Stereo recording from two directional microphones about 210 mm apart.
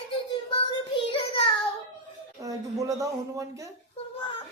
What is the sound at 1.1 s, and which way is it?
Child singing, 25° left (ahead or behind).